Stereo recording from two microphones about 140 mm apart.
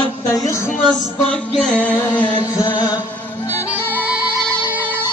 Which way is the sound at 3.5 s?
15° left (ahead or behind).